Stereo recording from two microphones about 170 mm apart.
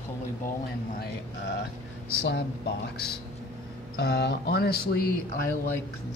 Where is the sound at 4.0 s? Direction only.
80° left; by 5.1 s 65° left (ahead or behind).